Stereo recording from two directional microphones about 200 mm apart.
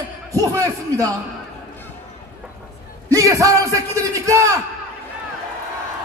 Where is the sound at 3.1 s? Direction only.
15° right (ahead or behind).